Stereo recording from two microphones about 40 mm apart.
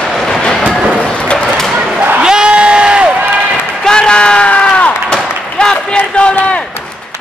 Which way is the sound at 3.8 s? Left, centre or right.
Left.